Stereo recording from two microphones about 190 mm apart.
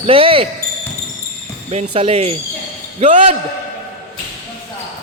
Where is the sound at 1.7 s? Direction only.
35° right (ahead or behind).